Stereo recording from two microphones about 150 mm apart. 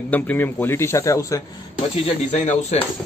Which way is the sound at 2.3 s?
55° left (ahead or behind).